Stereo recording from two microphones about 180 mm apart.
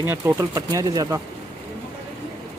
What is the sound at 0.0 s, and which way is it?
Speech, 10° right (ahead or behind).